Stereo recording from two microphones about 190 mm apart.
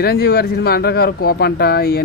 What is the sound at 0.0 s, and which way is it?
Speech, 55° left (ahead or behind).